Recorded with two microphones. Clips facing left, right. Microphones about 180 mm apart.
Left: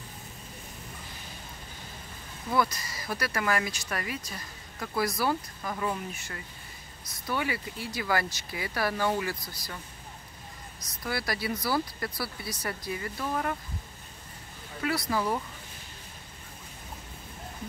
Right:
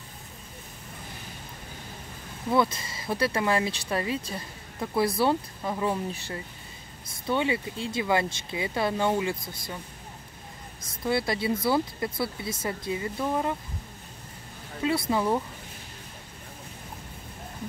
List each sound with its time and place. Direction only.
2.5 s speech: 25° right (ahead or behind)
11.1 s speech: 25° right (ahead or behind)
14.8 s speech: 25° right (ahead or behind)